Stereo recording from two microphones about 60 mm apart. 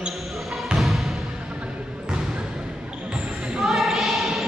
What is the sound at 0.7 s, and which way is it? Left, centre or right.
Music, centre.